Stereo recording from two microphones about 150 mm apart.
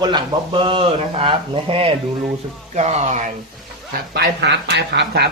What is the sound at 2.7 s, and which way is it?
Speech, 50° right (ahead or behind).